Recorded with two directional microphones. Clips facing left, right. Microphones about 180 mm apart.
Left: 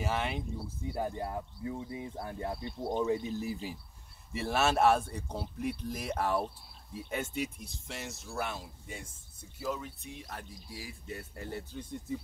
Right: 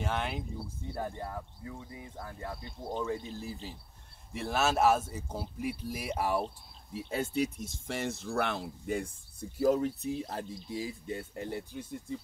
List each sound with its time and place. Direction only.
0.0 s speech: centre (ahead or behind)
0.9 s speech: 20° left (ahead or behind)
4.3 s speech: centre (ahead or behind)
6.9 s speech: 30° right (ahead or behind); by 9.0 s 65° right (ahead or behind)
9.6 s speech: 50° right (ahead or behind); by 12.0 s 10° right (ahead or behind)